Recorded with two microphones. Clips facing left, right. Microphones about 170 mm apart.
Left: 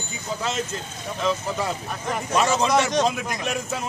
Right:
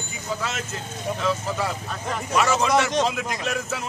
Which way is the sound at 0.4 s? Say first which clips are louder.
Left 3 dB; 20° left (ahead or behind).